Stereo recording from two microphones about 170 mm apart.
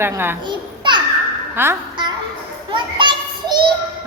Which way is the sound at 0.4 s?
25° right (ahead or behind).